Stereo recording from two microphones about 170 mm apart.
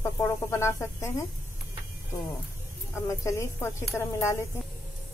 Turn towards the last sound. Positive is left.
turn(degrees=15)  # may be behind; listen again after turning